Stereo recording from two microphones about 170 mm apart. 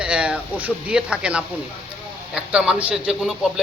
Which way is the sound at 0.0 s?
5° right (ahead or behind).